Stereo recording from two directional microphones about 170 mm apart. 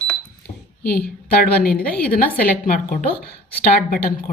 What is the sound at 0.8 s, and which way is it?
A woman's voice, 65° left (ahead or behind).